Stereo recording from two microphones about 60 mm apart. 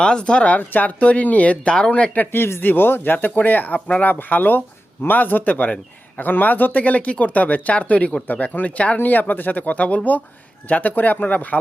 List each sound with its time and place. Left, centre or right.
0.0 s a man's voice: centre
2.3 s a man's voice: left